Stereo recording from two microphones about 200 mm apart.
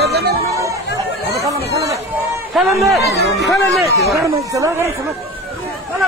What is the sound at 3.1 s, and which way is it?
Speech, 55° right (ahead or behind).